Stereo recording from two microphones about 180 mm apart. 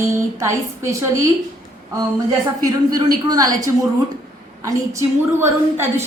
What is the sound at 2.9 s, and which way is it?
A woman's voice, 20° right (ahead or behind).